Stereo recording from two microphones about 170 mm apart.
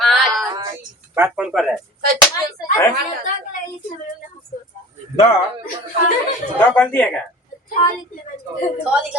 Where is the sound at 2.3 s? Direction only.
20° left (ahead or behind).